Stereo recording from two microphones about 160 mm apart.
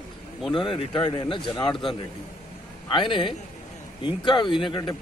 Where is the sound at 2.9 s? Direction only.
30° left (ahead or behind).